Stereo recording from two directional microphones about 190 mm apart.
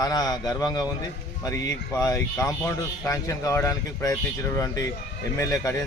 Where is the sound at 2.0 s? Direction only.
15° left (ahead or behind).